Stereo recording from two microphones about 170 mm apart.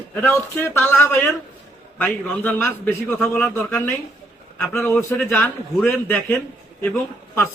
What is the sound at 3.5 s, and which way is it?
A man's voice, 15° left (ahead or behind).